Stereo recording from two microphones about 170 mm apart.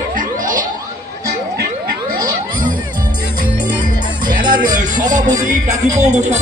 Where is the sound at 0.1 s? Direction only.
50° right (ahead or behind).